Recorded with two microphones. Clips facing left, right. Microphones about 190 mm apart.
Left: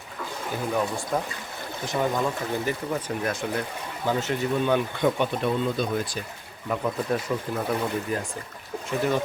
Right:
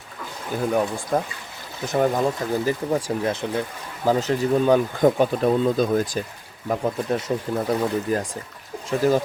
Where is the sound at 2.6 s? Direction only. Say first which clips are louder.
Right 5 dB; 35° right (ahead or behind).